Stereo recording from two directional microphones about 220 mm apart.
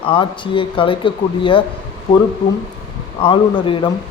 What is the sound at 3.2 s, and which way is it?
Speech, 20° left (ahead or behind).